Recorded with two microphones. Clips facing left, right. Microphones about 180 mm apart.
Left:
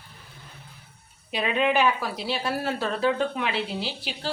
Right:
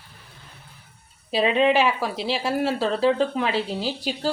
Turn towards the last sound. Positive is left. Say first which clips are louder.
# right 6 dB
turn(degrees=-40)  # may be behind; listen again after turning